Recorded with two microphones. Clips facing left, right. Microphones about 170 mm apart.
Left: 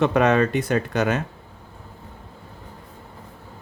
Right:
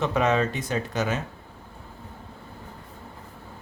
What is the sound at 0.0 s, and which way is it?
Speech, 65° left (ahead or behind).